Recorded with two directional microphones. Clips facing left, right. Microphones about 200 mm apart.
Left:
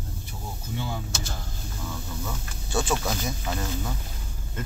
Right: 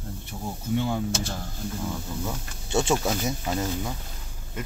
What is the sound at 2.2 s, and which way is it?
Speech, 25° right (ahead or behind).